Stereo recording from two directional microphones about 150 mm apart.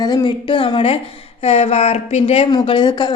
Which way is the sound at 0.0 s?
30° left (ahead or behind).